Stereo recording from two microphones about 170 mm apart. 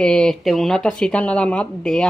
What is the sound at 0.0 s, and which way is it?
Speech, 5° left (ahead or behind).